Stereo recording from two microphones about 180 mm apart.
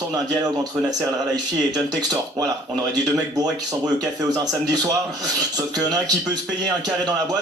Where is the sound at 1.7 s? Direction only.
20° right (ahead or behind).